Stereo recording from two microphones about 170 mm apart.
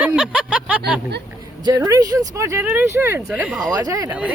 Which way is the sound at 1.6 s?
20° right (ahead or behind).